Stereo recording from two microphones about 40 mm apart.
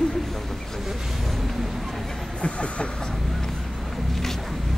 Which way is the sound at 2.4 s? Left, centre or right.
Left.